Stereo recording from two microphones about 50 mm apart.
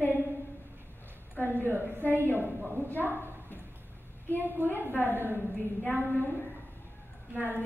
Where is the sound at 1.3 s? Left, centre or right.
Left.